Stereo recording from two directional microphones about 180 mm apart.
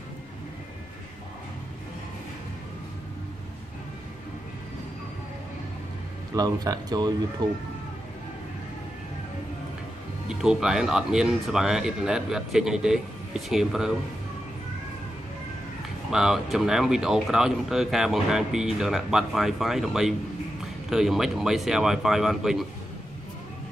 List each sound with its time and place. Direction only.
6.3 s speech: 20° right (ahead or behind)
10.2 s speech: 5° right (ahead or behind)
16.1 s speech: centre (ahead or behind)